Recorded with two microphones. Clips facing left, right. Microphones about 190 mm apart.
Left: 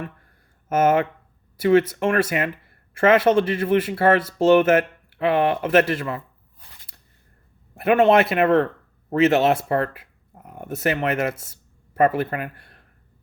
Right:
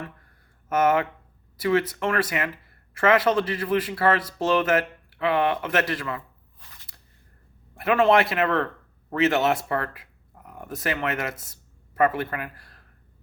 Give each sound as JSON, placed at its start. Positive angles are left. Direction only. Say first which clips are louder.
{"t": 0.7, "sound": "speech", "louder": "left 3 dB", "side_deg": 25}
{"t": 7.8, "sound": "speech", "louder": "left 3 dB", "side_deg": 25}